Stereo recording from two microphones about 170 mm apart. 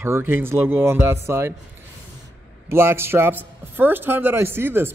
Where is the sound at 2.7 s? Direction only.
15° right (ahead or behind).